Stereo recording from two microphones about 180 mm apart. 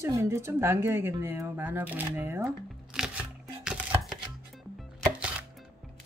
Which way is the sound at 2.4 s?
Centre (ahead or behind).